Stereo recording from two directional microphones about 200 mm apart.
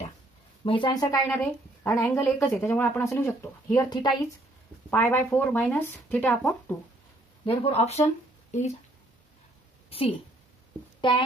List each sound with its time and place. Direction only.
0.7 s a woman's voice: 25° left (ahead or behind)
4.9 s a woman's voice: 10° left (ahead or behind)
7.4 s speech: 30° left (ahead or behind)
9.8 s a woman's voice: 30° left (ahead or behind)